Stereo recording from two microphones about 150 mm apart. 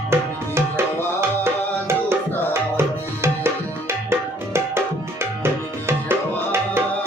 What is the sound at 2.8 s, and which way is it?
Tabla, 15° right (ahead or behind).